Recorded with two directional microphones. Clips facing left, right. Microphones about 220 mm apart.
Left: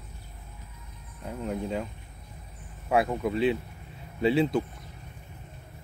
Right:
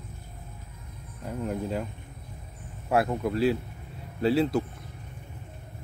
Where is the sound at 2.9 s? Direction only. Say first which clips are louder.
Even; centre (ahead or behind).